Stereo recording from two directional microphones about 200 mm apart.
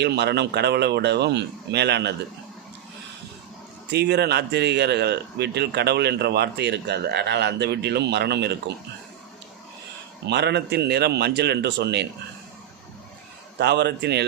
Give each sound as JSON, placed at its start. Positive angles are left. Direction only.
{"t": 0.0, "sound": "speech", "side_deg": -55}
{"t": 3.8, "sound": "speech", "side_deg": -55}
{"t": 10.2, "sound": "speech", "side_deg": -60}
{"t": 13.6, "sound": "speech", "side_deg": -55}